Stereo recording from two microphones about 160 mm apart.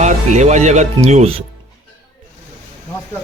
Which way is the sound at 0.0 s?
45° right (ahead or behind).